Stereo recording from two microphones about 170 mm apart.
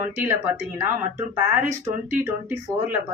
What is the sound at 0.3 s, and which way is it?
Speech, 15° right (ahead or behind).